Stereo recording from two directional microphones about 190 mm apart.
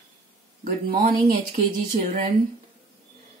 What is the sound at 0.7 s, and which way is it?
Speech, 50° right (ahead or behind).